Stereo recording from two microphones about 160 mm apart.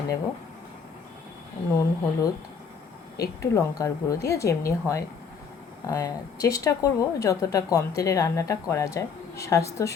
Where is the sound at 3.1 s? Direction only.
20° left (ahead or behind).